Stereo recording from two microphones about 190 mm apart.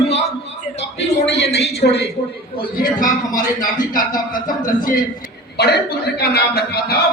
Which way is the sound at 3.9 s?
45° left (ahead or behind).